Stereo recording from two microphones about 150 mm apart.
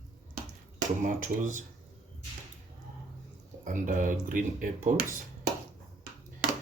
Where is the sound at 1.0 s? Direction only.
60° right (ahead or behind).